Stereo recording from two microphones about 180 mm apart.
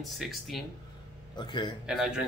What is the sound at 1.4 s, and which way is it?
Speech, 25° left (ahead or behind).